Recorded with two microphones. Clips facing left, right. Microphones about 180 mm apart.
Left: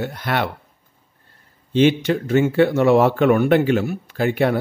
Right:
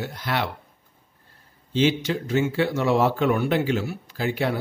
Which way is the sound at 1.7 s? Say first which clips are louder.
Left 6 dB; 60° left (ahead or behind).